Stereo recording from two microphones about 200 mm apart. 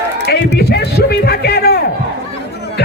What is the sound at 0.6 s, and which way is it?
Music, 55° left (ahead or behind).